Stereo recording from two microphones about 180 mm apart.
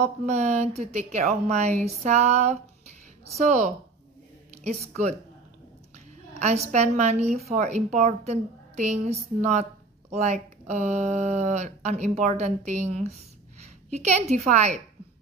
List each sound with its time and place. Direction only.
0.0 s a woman's voice: 40° right (ahead or behind)
6.4 s a woman's voice: 40° right (ahead or behind)